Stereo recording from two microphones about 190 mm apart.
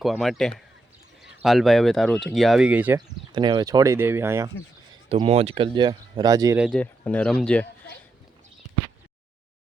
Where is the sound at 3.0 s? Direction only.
25° right (ahead or behind).